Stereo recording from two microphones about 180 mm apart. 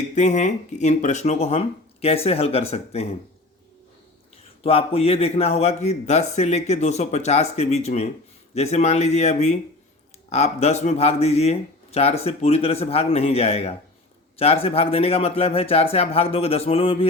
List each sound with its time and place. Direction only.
0.2 s speech: 40° left (ahead or behind)
4.6 s speech: 35° left (ahead or behind)